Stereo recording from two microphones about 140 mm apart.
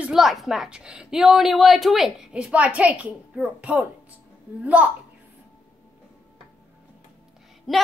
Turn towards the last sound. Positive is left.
turn(degrees=0)  # may be behind; listen again after turning